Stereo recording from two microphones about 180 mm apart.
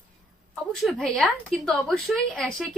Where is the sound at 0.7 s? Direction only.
5° left (ahead or behind).